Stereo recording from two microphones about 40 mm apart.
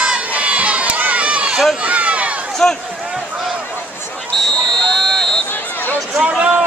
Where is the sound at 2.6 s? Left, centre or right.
Left.